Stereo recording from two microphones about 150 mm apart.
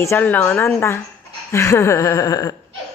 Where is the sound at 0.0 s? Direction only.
15° left (ahead or behind).